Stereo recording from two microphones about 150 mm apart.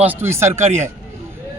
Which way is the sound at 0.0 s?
15° right (ahead or behind).